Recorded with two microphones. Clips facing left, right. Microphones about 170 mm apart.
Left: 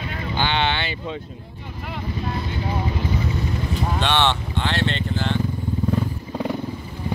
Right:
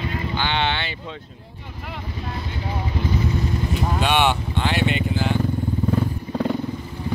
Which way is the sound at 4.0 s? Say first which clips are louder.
Right 2 dB; 10° right (ahead or behind).